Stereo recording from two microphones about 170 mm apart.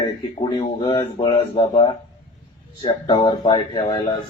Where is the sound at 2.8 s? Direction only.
30° left (ahead or behind).